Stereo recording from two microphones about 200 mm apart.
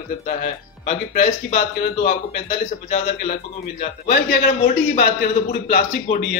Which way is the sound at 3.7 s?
55° left (ahead or behind).